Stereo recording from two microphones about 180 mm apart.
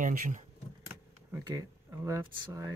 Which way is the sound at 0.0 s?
45° right (ahead or behind).